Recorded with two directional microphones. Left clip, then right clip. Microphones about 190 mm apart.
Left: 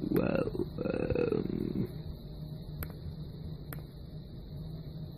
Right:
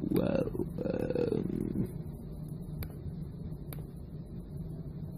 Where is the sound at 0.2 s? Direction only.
15° left (ahead or behind).